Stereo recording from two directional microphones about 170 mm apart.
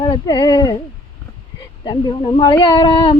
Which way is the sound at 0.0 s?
25° left (ahead or behind).